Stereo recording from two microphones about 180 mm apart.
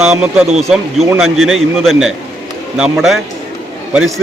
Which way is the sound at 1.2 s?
Centre (ahead or behind).